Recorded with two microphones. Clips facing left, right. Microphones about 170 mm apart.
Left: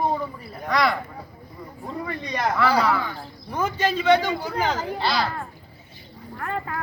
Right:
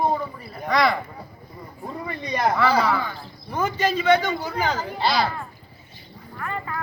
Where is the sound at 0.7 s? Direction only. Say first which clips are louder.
Right 2 dB; centre (ahead or behind).